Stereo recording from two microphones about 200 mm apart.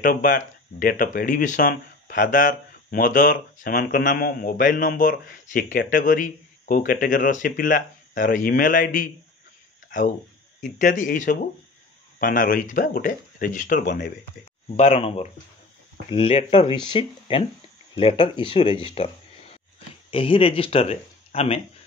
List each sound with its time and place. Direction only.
0.0 s speech: 45° left (ahead or behind)
9.8 s a sound: 40° left (ahead or behind)
10.6 s speech: 40° left (ahead or behind)
14.8 s speech: 30° left (ahead or behind)
20.1 s speech: 25° left (ahead or behind)